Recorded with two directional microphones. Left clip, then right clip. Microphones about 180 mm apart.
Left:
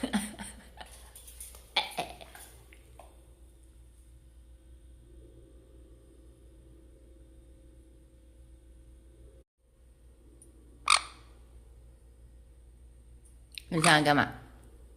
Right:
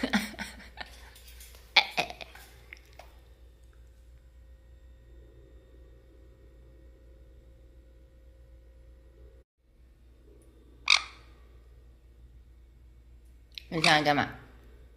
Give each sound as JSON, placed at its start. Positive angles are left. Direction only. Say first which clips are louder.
{"t": 0.0, "sound": "a sound", "louder": "right 4 dB", "side_deg": -20}
{"t": 10.9, "sound": "frog", "louder": "right 1 dB", "side_deg": 30}
{"t": 13.5, "sound": "speech", "louder": "even", "side_deg": 25}